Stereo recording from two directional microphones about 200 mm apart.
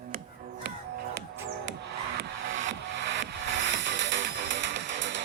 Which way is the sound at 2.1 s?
60° right (ahead or behind).